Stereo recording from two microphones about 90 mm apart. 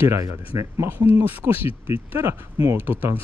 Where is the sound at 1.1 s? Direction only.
25° right (ahead or behind).